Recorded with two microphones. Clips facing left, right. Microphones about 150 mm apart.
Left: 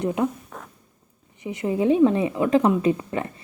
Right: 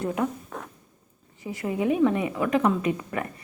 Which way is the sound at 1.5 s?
25° left (ahead or behind).